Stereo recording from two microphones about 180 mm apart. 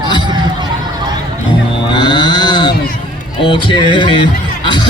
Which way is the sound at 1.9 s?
25° left (ahead or behind).